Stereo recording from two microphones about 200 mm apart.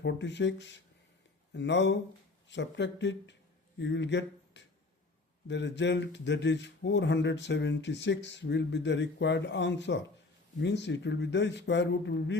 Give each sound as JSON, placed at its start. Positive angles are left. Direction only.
{"t": 0.0, "sound": "speech", "side_deg": 60}